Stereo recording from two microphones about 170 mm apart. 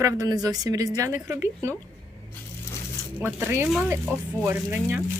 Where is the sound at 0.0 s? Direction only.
20° right (ahead or behind).